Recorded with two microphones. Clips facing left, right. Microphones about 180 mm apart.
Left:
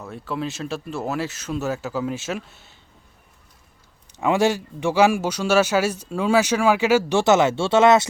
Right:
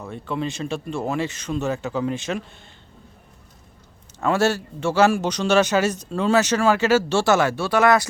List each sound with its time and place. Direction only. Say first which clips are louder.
0.0 s speech: right 1 dB; centre (ahead or behind)
4.2 s a man's voice: left 1 dB; 15° left (ahead or behind)